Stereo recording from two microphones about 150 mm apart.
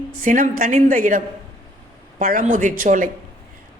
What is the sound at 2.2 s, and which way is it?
Speech, 65° right (ahead or behind).